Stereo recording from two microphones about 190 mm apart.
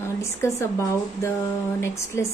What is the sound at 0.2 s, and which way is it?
A woman's voice, 15° left (ahead or behind).